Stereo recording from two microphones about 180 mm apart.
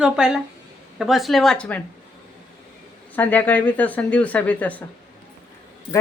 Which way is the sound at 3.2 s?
10° left (ahead or behind).